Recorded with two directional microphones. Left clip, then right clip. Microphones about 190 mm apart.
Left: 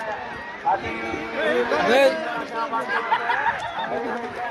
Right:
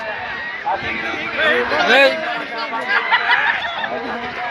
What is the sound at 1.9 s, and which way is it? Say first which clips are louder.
Speech: right 5 dB; centre (ahead or behind).